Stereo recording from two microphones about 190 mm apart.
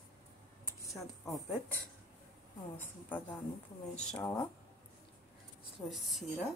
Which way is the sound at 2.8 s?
10° left (ahead or behind).